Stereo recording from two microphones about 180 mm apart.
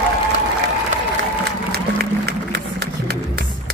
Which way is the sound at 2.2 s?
60° right (ahead or behind).